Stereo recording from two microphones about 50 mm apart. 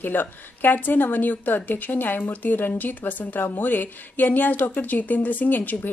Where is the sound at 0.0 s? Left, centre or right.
Left.